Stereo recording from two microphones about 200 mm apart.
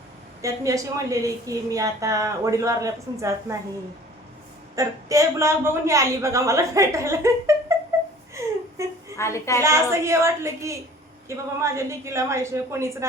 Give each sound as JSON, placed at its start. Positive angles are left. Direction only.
{"t": 0.4, "sound": "a woman's voice", "side_deg": -15}
{"t": 4.7, "sound": "a woman's voice", "side_deg": -15}
{"t": 8.8, "sound": "a sound", "side_deg": -15}
{"t": 9.1, "sound": "a woman's voice", "side_deg": 15}
{"t": 9.6, "sound": "a woman's voice", "side_deg": -15}